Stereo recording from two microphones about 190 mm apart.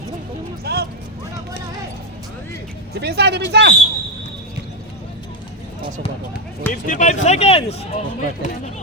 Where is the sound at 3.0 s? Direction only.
60° right (ahead or behind).